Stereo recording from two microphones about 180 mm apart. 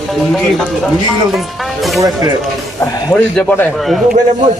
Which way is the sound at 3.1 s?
5° left (ahead or behind).